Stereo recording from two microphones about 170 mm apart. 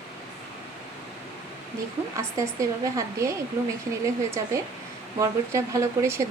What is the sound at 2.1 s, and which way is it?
A woman's voice, 20° right (ahead or behind).